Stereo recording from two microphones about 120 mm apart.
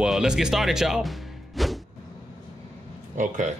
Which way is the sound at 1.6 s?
Centre (ahead or behind).